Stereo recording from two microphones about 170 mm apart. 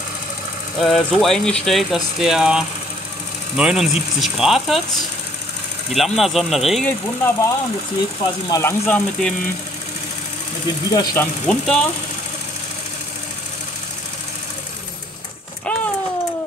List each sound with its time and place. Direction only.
0.7 s speech: centre (ahead or behind)
6.9 s speech: 15° left (ahead or behind)
8.8 s speech: 10° left (ahead or behind)
10.9 s speech: 20° left (ahead or behind)
11.4 s speech: 5° left (ahead or behind)